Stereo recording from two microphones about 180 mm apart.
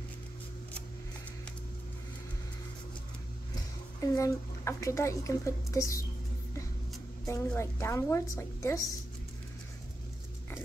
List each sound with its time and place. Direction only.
4.0 s speech: 15° left (ahead or behind)
7.2 s speech: 15° left (ahead or behind)